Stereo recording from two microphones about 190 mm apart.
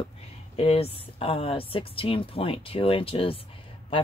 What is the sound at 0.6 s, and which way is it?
Speech, 30° left (ahead or behind).